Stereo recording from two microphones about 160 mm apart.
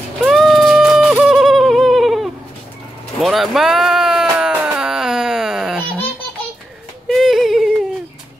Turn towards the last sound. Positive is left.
turn(degrees=0)  # may be behind; listen again after turning